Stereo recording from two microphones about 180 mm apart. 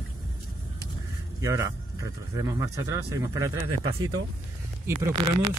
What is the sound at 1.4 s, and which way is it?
Speech, 20° right (ahead or behind).